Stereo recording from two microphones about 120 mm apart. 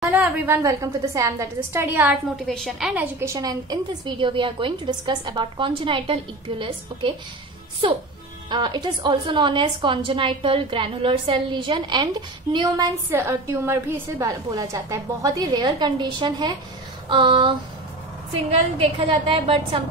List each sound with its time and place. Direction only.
0.1 s a woman's voice: 10° right (ahead or behind)
0.6 s a woman's voice: 25° right (ahead or behind)
2.0 s a woman's voice: centre (ahead or behind)
3.2 s a woman's voice: 30° right (ahead or behind); by 7.2 s 45° right (ahead or behind)
8.5 s a woman's voice: 40° right (ahead or behind)
13.1 s a woman's voice: 20° right (ahead or behind); by 19.8 s 50° right (ahead or behind)